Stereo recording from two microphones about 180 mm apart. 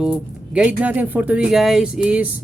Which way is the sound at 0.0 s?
5° right (ahead or behind).